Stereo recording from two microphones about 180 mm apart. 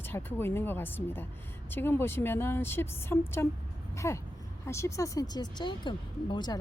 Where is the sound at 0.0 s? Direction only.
10° left (ahead or behind).